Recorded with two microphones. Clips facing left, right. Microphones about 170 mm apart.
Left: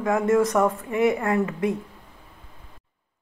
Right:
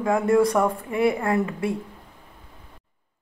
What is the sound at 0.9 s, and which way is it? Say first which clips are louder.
Speech: even; 30° right (ahead or behind).